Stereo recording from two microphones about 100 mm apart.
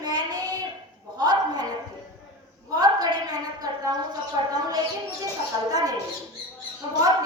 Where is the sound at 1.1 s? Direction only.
40° right (ahead or behind).